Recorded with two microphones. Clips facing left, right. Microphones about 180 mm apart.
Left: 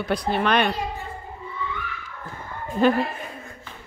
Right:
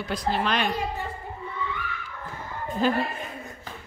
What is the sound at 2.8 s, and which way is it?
Speech, 60° left (ahead or behind).